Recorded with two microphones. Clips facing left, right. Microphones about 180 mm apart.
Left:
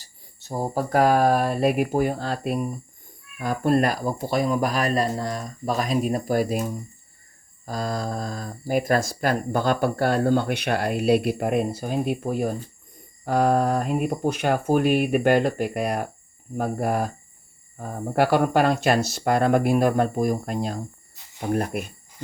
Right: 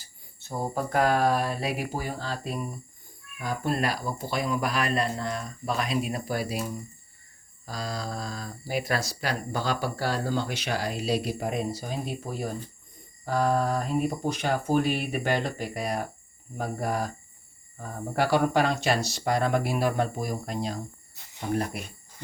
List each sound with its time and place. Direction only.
0.0 s speech: 35° left (ahead or behind); by 21.8 s 55° left (ahead or behind)